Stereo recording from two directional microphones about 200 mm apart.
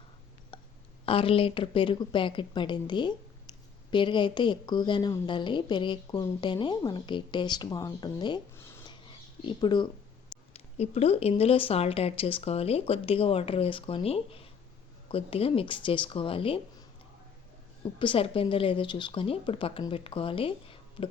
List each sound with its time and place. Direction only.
0.5 s a sound: 25° left (ahead or behind)
1.0 s a woman's voice: 25° left (ahead or behind)
18.0 s a woman's voice: 25° left (ahead or behind)